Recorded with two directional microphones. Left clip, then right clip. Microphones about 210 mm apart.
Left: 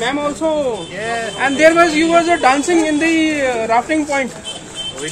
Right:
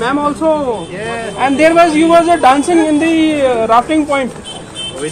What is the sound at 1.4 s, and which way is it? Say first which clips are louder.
A man's voice: right 2 dB; 15° right (ahead or behind).